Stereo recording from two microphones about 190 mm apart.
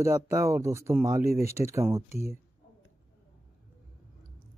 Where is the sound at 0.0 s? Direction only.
15° right (ahead or behind).